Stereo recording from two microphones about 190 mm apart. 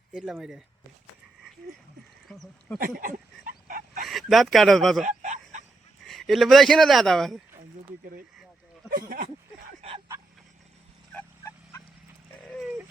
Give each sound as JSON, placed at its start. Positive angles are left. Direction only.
{"t": 0.1, "sound": "speech", "side_deg": -5}
{"t": 2.2, "sound": "speech", "side_deg": 0}
{"t": 2.7, "sound": "a sound", "side_deg": -45}
{"t": 4.0, "sound": "speech", "side_deg": 0}
{"t": 5.0, "sound": "a sound", "side_deg": -40}
{"t": 6.1, "sound": "speech", "side_deg": 0}
{"t": 8.9, "sound": "speech", "side_deg": -45}
{"t": 11.1, "sound": "fowl", "side_deg": 5}
{"t": 12.5, "sound": "dog", "side_deg": 0}